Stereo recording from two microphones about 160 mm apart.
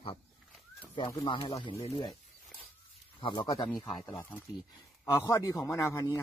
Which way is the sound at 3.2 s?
30° left (ahead or behind).